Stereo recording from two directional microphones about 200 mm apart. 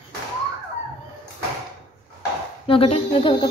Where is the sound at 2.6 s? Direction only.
30° left (ahead or behind).